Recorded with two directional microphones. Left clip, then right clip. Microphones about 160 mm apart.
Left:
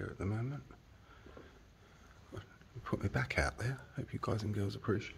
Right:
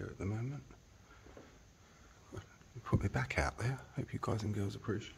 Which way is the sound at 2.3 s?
5° right (ahead or behind).